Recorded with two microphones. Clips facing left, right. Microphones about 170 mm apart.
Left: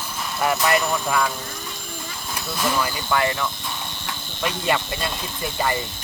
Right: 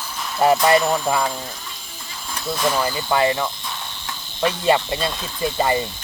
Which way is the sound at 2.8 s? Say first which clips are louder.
Right 3 dB; 25° right (ahead or behind).